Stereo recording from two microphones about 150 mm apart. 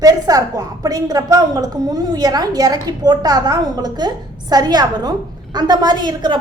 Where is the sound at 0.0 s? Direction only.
25° right (ahead or behind).